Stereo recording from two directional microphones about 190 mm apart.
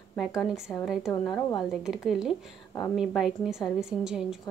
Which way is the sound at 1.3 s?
25° left (ahead or behind).